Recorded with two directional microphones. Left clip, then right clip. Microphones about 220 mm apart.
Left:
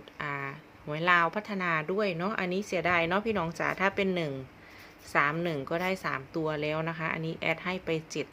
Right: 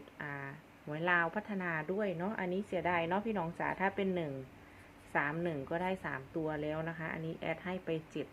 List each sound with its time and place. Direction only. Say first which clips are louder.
0.2 s a woman's voice: left 9 dB; 25° left (ahead or behind)